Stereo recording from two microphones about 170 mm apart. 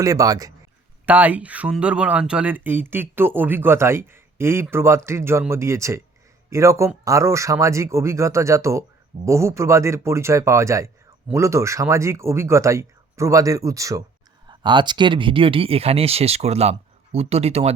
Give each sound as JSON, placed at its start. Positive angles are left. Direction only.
{"t": 0.0, "sound": "speech", "side_deg": -20}
{"t": 1.0, "sound": "speech", "side_deg": -10}